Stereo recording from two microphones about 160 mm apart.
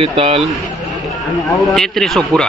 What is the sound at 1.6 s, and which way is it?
Speech, 5° left (ahead or behind).